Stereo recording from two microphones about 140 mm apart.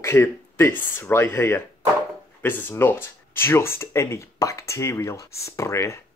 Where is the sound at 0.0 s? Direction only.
20° left (ahead or behind).